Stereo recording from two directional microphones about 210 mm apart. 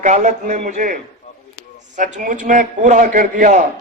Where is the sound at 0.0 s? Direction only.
35° right (ahead or behind).